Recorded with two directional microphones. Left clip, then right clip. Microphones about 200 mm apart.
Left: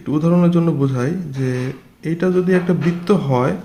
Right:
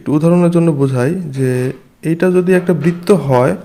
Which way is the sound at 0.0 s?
30° right (ahead or behind).